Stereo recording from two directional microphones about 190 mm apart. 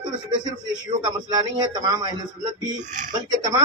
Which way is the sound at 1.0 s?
20° right (ahead or behind).